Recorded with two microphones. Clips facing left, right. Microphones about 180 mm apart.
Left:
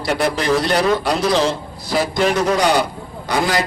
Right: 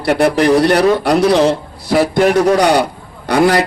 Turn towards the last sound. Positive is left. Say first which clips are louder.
# right 7 dB
turn(degrees=-60)  # may be behind; listen again after turning